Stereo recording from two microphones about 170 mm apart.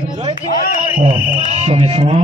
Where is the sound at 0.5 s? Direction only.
55° left (ahead or behind).